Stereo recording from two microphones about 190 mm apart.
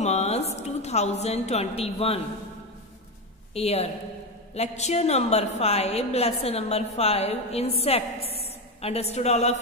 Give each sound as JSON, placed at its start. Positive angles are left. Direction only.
{"t": 0.0, "sound": "a woman's voice", "side_deg": 35}
{"t": 3.5, "sound": "a woman's voice", "side_deg": 30}